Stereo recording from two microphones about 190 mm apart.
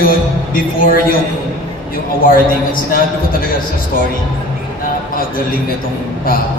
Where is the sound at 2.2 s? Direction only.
50° left (ahead or behind).